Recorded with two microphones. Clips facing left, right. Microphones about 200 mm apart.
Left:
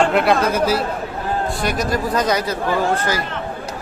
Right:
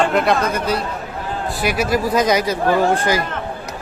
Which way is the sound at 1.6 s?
10° right (ahead or behind).